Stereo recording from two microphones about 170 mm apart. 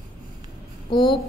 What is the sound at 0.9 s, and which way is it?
Speech, 25° left (ahead or behind).